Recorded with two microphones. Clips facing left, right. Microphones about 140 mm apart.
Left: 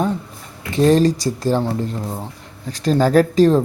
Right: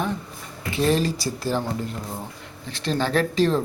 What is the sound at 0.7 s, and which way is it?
Speech, 40° left (ahead or behind).